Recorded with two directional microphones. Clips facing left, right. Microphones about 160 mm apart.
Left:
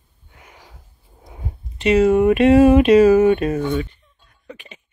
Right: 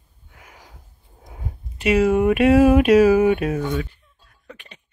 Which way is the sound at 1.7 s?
5° right (ahead or behind).